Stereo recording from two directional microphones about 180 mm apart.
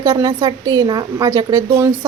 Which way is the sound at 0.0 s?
25° right (ahead or behind).